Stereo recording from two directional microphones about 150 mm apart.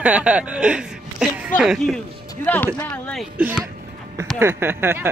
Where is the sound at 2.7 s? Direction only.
10° left (ahead or behind).